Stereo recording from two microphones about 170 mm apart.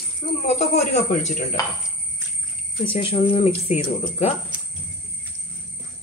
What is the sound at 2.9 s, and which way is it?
Speech, 35° left (ahead or behind).